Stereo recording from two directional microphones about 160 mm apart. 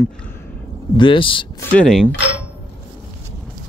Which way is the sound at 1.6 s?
10° left (ahead or behind).